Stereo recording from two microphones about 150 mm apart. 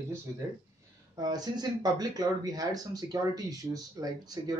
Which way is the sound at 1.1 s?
25° right (ahead or behind).